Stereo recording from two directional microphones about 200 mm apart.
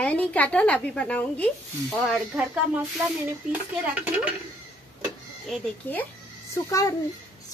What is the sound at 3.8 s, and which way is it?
Speech, 10° right (ahead or behind).